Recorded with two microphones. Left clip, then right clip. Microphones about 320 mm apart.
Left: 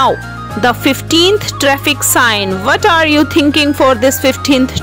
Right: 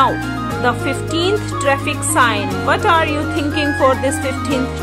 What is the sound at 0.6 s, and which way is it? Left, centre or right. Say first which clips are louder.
Speech: left 7 dB; left.